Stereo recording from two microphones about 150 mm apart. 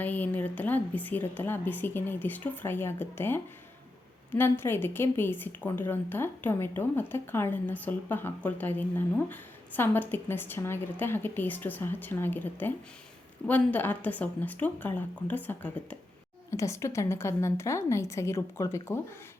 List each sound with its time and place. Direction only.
0.0 s a woman's voice: 10° left (ahead or behind)